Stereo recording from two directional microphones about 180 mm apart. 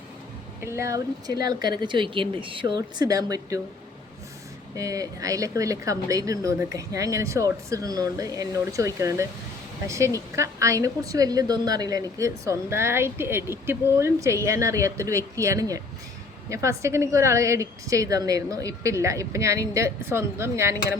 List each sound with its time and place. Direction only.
0.6 s a woman's voice: 15° right (ahead or behind)
1.8 s a woman's voice: 25° right (ahead or behind)
4.7 s a woman's voice: 20° right (ahead or behind)